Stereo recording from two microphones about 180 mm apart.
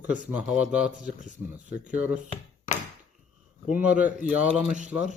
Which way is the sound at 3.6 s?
5° right (ahead or behind).